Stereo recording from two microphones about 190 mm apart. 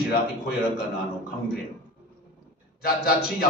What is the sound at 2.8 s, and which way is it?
Speech, 50° left (ahead or behind).